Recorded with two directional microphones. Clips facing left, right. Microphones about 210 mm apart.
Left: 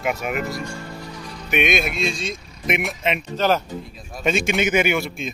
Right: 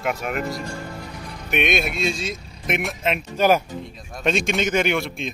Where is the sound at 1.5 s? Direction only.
Centre (ahead or behind).